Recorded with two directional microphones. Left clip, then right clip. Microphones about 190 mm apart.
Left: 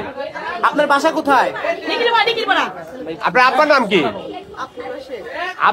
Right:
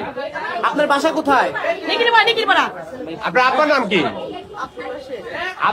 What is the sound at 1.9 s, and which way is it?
Speech, 50° right (ahead or behind).